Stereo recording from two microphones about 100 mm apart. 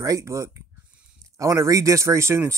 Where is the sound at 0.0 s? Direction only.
30° right (ahead or behind).